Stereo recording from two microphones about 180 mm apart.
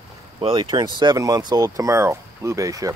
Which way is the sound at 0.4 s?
30° right (ahead or behind).